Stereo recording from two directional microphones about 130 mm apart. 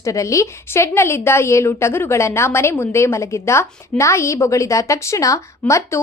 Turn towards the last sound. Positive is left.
turn(degrees=20)  # may be behind; listen again after turning